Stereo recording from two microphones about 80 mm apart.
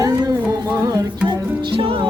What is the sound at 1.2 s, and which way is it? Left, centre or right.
Music, right.